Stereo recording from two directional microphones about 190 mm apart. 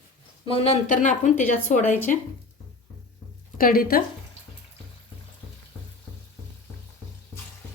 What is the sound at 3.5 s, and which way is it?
Speech, 50° left (ahead or behind).